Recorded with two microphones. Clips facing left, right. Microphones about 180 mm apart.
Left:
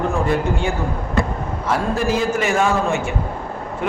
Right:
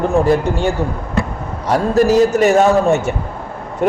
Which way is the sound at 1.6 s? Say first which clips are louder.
Right 7 dB; 40° right (ahead or behind).